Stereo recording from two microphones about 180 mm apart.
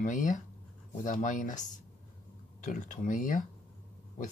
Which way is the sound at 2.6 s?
45° left (ahead or behind).